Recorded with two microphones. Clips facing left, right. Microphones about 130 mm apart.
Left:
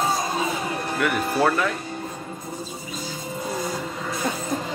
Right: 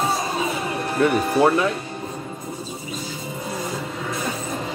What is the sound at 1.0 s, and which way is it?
Speech, 25° right (ahead or behind).